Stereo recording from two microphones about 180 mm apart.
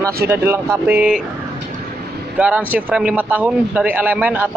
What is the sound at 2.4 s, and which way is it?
A man's voice, 10° right (ahead or behind).